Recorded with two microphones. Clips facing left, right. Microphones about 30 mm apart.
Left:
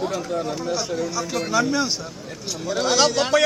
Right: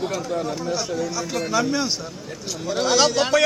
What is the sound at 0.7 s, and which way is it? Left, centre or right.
A man's voice, centre.